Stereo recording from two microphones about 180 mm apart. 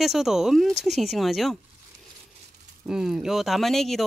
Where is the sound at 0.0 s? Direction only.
Centre (ahead or behind).